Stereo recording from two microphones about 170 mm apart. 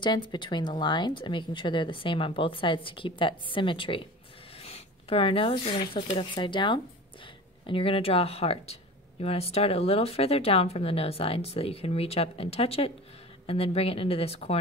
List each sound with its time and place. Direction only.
0.0 s speech: 25° left (ahead or behind)